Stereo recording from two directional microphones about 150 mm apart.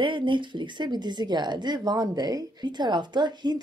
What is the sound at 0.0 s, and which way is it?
Speech, 30° right (ahead or behind).